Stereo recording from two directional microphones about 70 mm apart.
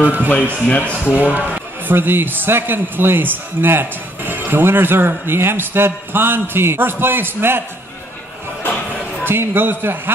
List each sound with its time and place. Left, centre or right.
0.0 s speech: right
0.7 s speech: left
1.1 s a man's voice: right
9.2 s a man's voice: right